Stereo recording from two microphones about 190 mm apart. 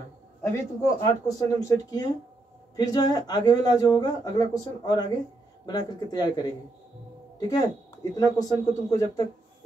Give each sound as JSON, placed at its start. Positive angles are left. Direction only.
{"t": 0.5, "sound": "speech", "side_deg": 15}